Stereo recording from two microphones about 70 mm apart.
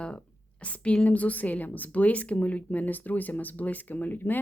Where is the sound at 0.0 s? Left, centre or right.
Centre.